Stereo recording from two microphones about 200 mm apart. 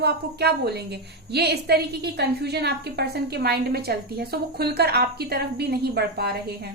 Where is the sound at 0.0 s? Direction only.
55° right (ahead or behind).